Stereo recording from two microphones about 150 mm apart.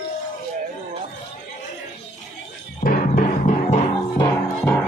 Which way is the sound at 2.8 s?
65° left (ahead or behind).